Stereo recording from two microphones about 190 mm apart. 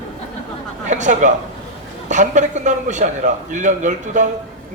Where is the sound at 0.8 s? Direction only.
40° right (ahead or behind).